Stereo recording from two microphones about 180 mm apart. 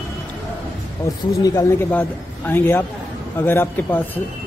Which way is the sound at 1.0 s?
15° left (ahead or behind).